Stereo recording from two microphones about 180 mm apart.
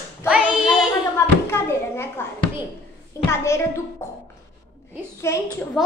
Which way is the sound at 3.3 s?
15° left (ahead or behind).